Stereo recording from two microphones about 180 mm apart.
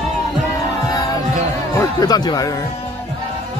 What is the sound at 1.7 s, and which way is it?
Speech, 15° left (ahead or behind).